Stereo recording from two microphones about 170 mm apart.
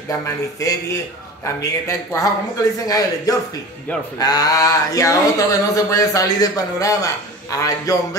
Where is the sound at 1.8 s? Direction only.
20° left (ahead or behind).